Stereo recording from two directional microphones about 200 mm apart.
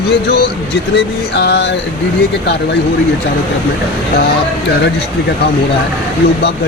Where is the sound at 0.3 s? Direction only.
55° left (ahead or behind).